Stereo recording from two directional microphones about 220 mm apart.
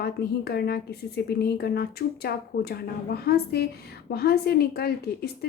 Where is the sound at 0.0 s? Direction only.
45° left (ahead or behind).